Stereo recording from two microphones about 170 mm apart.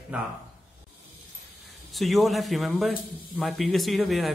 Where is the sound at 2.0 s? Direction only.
Centre (ahead or behind).